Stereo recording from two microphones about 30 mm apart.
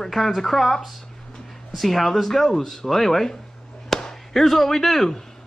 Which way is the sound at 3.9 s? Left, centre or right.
Centre.